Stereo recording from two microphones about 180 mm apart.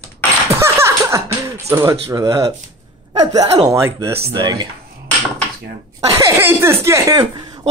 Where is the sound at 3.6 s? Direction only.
15° right (ahead or behind).